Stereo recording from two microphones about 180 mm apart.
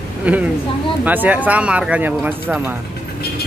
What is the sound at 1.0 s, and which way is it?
Speech, 10° right (ahead or behind).